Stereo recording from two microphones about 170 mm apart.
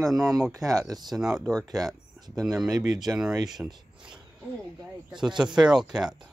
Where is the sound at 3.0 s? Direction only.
Centre (ahead or behind).